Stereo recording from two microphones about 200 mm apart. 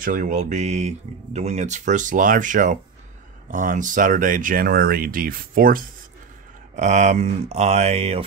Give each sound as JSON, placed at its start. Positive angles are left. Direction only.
{"t": 0.0, "sound": "speech", "side_deg": -40}